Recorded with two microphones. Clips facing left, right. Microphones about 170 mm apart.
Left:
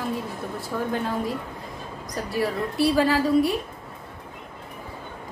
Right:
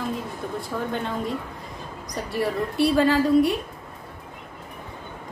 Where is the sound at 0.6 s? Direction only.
5° left (ahead or behind).